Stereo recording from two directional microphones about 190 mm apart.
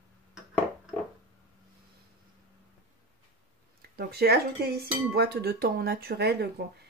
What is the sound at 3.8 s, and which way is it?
Speech, 55° right (ahead or behind).